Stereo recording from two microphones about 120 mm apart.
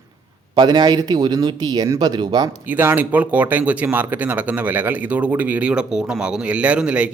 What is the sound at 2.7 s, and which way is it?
Speech, 15° right (ahead or behind).